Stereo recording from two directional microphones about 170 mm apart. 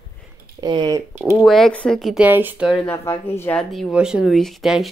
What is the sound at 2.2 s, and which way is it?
Speech, 10° right (ahead or behind).